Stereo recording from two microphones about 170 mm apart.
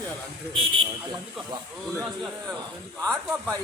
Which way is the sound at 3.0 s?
5° left (ahead or behind).